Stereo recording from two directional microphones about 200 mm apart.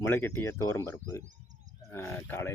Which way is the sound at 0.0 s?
10° left (ahead or behind).